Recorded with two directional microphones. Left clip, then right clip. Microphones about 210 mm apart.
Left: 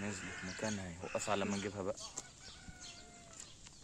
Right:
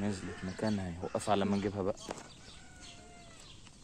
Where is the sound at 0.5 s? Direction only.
45° right (ahead or behind).